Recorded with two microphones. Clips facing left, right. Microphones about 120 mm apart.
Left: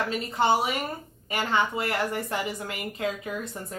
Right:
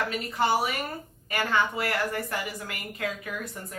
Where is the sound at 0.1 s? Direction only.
25° left (ahead or behind).